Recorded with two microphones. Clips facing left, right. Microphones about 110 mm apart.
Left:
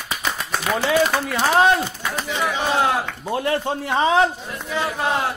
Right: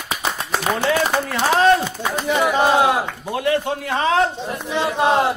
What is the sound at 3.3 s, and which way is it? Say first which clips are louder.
Speech: right 1 dB; 30° left (ahead or behind).